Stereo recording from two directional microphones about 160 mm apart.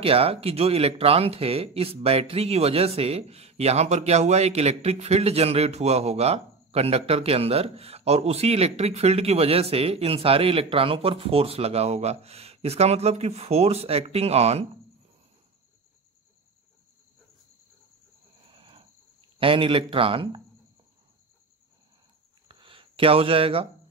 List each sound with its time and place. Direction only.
0.0 s speech: 35° right (ahead or behind)
18.5 s cricket: 35° right (ahead or behind)
19.4 s speech: 35° right (ahead or behind)
22.5 s a sound: 30° right (ahead or behind)